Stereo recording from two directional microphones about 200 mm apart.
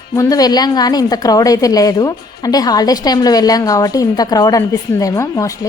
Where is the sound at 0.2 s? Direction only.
20° left (ahead or behind).